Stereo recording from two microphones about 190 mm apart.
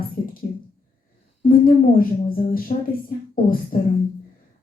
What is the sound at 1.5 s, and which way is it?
Speech, 45° left (ahead or behind).